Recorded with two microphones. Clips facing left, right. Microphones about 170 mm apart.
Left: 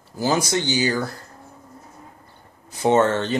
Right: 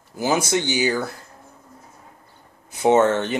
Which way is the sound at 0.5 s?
15° right (ahead or behind).